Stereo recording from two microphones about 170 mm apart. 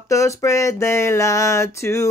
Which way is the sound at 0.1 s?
20° left (ahead or behind).